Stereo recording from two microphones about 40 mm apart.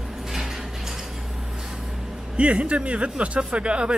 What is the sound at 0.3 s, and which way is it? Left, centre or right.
Sliding door, centre.